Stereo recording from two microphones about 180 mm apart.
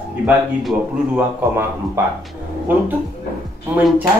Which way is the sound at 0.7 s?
10° right (ahead or behind).